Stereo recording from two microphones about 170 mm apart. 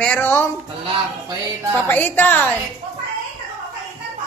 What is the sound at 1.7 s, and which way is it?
Music, 10° left (ahead or behind).